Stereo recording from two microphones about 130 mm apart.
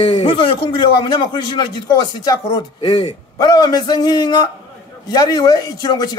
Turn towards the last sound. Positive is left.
turn(degrees=30)  # may be behind; listen again after turning